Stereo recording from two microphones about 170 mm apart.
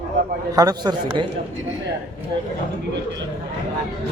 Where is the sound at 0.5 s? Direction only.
20° right (ahead or behind).